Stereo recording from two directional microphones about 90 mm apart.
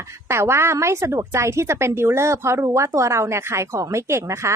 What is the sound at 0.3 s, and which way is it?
A woman's voice, 30° right (ahead or behind).